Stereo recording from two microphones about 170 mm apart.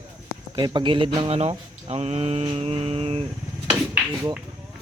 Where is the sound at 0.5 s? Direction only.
25° right (ahead or behind).